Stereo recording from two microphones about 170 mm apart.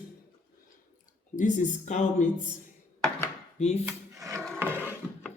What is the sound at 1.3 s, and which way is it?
Speech, 45° left (ahead or behind).